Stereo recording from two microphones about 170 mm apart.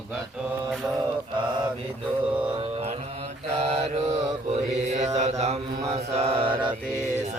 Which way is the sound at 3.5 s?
40° right (ahead or behind).